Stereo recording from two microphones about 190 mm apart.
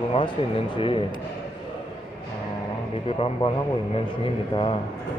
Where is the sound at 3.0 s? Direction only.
30° left (ahead or behind).